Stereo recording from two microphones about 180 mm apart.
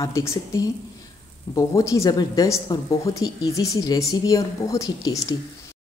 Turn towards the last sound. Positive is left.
turn(degrees=20)  # may be behind; listen again after turning